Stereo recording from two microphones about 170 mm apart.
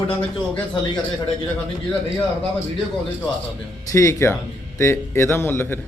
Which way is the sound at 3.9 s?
20° left (ahead or behind).